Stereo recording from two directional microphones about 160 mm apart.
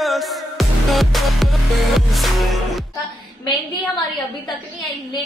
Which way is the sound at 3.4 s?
25° left (ahead or behind).